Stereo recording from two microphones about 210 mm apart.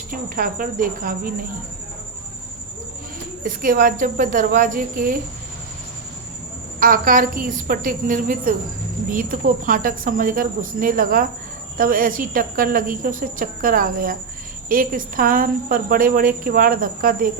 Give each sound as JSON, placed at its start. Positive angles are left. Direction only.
{"t": 0.1, "sound": "speech", "side_deg": -40}
{"t": 3.4, "sound": "speech", "side_deg": -40}
{"t": 6.7, "sound": "speech", "side_deg": -40}